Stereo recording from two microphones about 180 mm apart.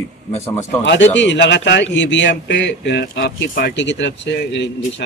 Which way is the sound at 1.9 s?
90° left.